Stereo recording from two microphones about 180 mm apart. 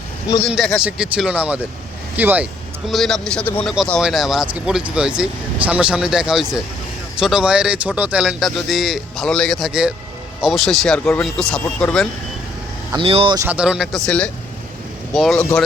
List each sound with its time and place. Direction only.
0.5 s speech: centre (ahead or behind)
12.9 s speech: 30° right (ahead or behind)
13.3 s speech: 10° right (ahead or behind)